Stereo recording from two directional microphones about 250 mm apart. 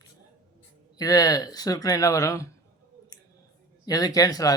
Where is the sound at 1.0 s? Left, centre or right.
Centre.